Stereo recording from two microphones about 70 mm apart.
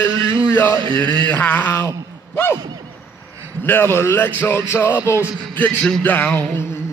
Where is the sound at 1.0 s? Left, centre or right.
Right.